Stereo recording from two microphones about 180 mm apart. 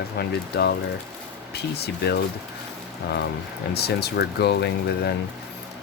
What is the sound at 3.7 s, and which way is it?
Speech, 65° left (ahead or behind).